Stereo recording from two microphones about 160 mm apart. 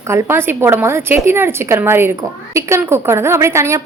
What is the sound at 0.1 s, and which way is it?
A woman's voice, 15° right (ahead or behind).